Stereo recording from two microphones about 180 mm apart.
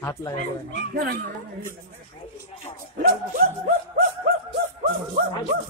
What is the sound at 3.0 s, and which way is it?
Speech, 55° right (ahead or behind).